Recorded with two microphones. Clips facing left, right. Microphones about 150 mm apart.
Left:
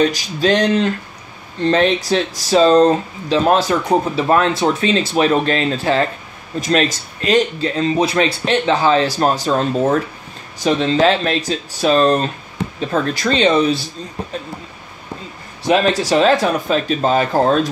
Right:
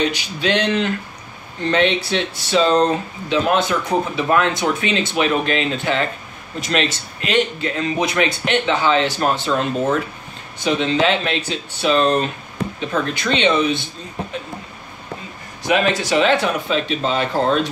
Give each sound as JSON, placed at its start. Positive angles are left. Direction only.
{"t": 0.0, "sound": "speech", "side_deg": 40}
{"t": 15.6, "sound": "speech", "side_deg": 35}